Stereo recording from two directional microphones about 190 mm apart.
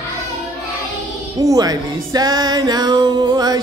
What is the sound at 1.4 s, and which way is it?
Music, 20° right (ahead or behind).